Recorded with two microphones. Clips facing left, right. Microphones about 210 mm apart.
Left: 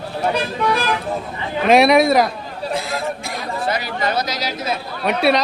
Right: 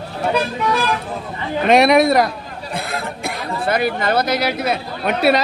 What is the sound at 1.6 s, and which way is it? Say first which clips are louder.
Speech: even; centre (ahead or behind).